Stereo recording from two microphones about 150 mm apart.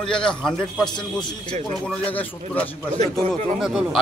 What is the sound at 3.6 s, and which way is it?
Speech, 5° right (ahead or behind).